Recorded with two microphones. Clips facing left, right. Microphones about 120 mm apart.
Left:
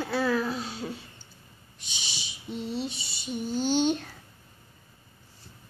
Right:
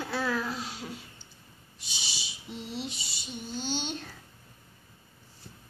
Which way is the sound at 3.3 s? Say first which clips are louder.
Left 8 dB; 10° left (ahead or behind).